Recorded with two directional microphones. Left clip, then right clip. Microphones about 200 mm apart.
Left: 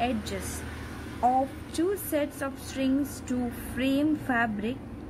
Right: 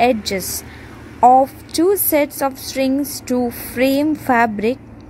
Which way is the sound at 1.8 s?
35° right (ahead or behind).